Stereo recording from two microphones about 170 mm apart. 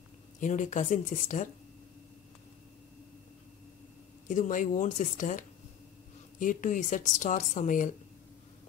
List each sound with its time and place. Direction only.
0.4 s a woman's voice: 45° left (ahead or behind)
4.3 s a woman's voice: 50° left (ahead or behind)
6.4 s a woman's voice: 50° left (ahead or behind)